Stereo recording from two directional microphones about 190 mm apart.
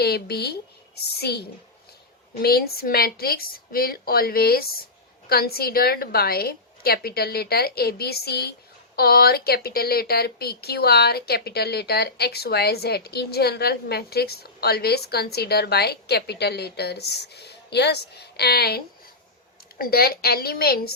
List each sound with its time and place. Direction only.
0.0 s a woman's voice: 55° left (ahead or behind)
19.8 s a woman's voice: 55° left (ahead or behind)